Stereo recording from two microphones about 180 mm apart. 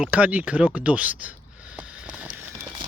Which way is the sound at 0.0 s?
5° right (ahead or behind).